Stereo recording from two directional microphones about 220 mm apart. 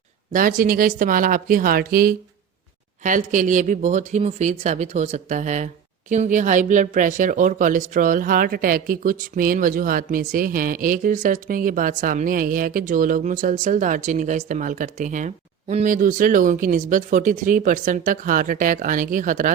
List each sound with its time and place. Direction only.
0.3 s speech: 40° right (ahead or behind)